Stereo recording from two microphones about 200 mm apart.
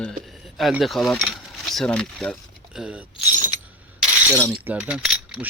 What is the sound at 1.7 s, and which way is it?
Speech, 5° left (ahead or behind).